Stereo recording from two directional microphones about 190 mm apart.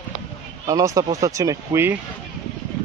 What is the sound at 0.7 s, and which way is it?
Speech, 20° right (ahead or behind).